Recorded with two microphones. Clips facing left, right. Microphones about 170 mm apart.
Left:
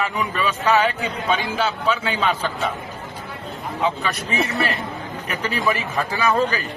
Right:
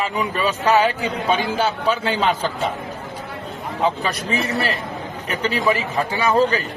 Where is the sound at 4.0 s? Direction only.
30° right (ahead or behind).